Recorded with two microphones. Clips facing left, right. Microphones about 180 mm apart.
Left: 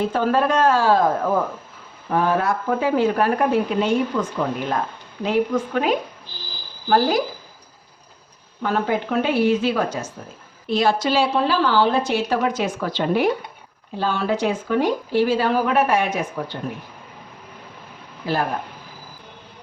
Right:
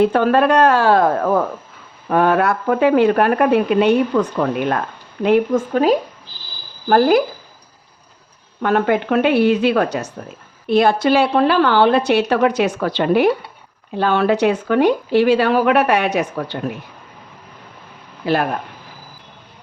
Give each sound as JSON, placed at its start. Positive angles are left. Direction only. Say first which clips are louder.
{"t": 0.0, "sound": "a woman's voice", "louder": "right 6 dB", "side_deg": -65}
{"t": 5.7, "sound": "speech", "louder": "right 6 dB", "side_deg": -35}
{"t": 6.8, "sound": "a woman's voice", "louder": "right 5 dB", "side_deg": -55}
{"t": 8.6, "sound": "a woman's voice", "louder": "right 5 dB", "side_deg": -65}
{"t": 18.2, "sound": "speech", "louder": "right 6 dB", "side_deg": -70}